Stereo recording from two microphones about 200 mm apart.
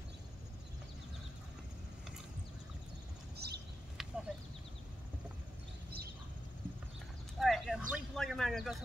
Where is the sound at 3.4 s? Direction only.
55° right (ahead or behind).